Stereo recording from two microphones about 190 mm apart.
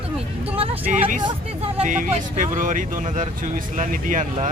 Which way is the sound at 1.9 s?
40° right (ahead or behind).